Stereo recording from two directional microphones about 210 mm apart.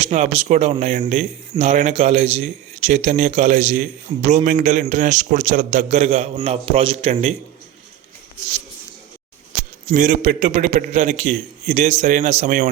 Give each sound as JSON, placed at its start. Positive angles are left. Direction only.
{"t": 0.0, "sound": "a man's voice", "side_deg": -30}
{"t": 9.9, "sound": "a man's voice", "side_deg": -35}